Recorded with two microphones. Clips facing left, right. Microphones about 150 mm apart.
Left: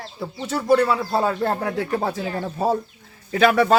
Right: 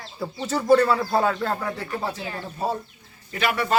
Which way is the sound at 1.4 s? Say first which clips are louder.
Left 4 dB; 60° left (ahead or behind).